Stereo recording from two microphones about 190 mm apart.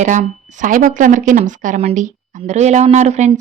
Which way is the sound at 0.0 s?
40° right (ahead or behind).